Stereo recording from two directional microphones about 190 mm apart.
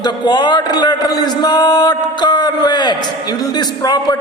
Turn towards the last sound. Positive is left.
turn(degrees=20)  # may be behind; listen again after turning